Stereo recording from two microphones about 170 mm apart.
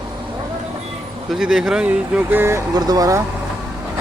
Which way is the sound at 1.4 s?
Centre (ahead or behind).